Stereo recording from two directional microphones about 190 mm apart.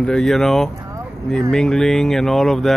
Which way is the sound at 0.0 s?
5° left (ahead or behind).